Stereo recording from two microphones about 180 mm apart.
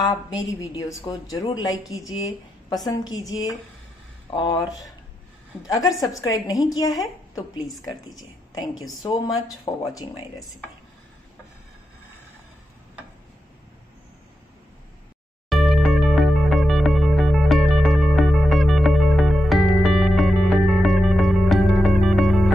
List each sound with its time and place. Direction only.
0.1 s speech: 20° left (ahead or behind)
2.9 s speech: 20° left (ahead or behind)
5.7 s speech: 20° left (ahead or behind)
15.5 s music: centre (ahead or behind)